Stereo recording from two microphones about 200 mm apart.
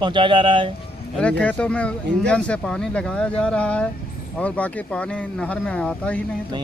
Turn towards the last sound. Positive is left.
turn(degrees=5)  # may be behind; listen again after turning